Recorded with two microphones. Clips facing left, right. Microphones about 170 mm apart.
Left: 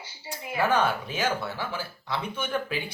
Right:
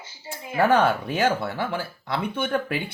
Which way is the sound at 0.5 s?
60° right (ahead or behind).